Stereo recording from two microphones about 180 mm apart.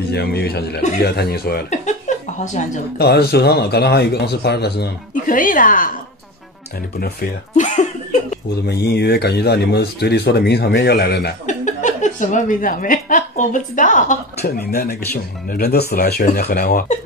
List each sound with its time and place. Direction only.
0.1 s speech: 65° left (ahead or behind)
1.7 s chuckle: 40° left (ahead or behind)
3.0 s speech: 60° left (ahead or behind)
7.0 s a sound: 50° left (ahead or behind)
8.6 s speech: 65° left (ahead or behind)
11.4 s a woman's voice: 45° left (ahead or behind)
14.4 s speech: 60° left (ahead or behind)